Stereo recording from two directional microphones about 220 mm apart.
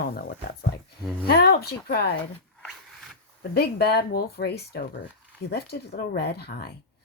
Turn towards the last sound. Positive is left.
turn(degrees=45)  # may be behind; listen again after turning